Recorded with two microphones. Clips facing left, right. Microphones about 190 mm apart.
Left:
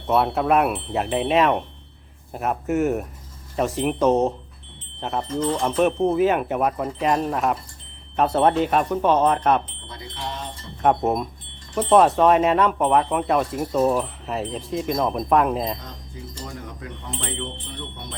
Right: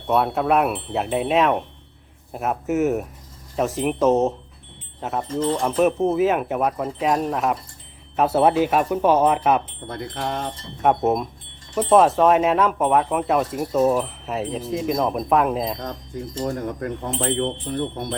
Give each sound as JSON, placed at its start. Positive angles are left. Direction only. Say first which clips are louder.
{"t": 0.1, "sound": "speech", "louder": "even", "side_deg": 0}
{"t": 9.8, "sound": "bell", "louder": "right 6 dB", "side_deg": -55}
{"t": 10.8, "sound": "speech", "louder": "right 1 dB", "side_deg": 0}
{"t": 15.8, "sound": "bell", "louder": "right 8 dB", "side_deg": -55}